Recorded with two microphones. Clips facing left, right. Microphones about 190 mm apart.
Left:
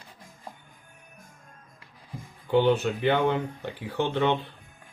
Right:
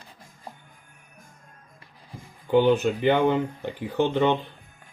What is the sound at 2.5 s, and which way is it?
Speech, 15° right (ahead or behind).